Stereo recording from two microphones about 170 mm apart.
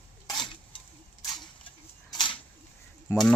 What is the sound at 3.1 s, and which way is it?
Speech, 15° left (ahead or behind).